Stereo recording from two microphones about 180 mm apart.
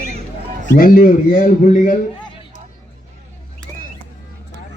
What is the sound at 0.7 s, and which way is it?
A man's voice, 50° left (ahead or behind).